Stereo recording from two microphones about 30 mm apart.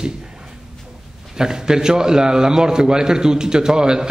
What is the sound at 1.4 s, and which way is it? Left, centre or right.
A man's voice, right.